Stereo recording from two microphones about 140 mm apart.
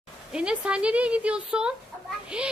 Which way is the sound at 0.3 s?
5° right (ahead or behind).